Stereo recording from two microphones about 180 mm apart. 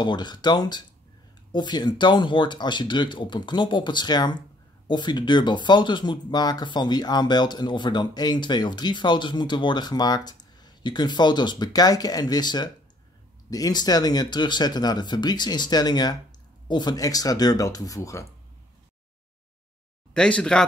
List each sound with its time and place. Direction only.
0.0 s speech: 25° left (ahead or behind)
20.2 s speech: 5° left (ahead or behind)